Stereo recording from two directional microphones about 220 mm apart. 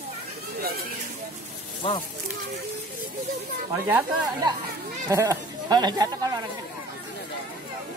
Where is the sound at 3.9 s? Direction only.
10° right (ahead or behind).